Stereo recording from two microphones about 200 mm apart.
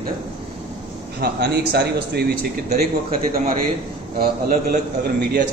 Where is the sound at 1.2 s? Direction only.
55° right (ahead or behind).